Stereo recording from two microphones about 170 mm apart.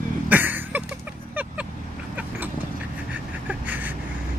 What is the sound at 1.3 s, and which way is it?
Vehicle, 10° right (ahead or behind).